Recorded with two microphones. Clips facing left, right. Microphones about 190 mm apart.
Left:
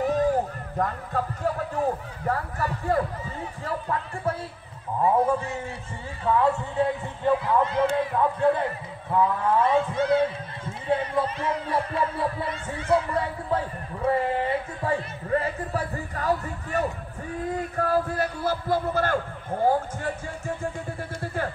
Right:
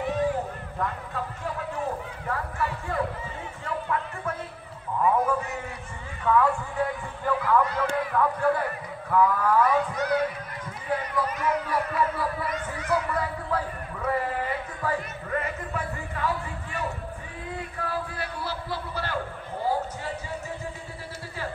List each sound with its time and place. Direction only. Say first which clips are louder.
0.0 s run: left 4 dB; 40° left (ahead or behind)
2.2 s speech: left 3 dB; 40° left (ahead or behind)
3.6 s music: even; 35° left (ahead or behind)
5.0 s a man's voice: left 2 dB; 30° left (ahead or behind); by 20.5 s 50° left (ahead or behind)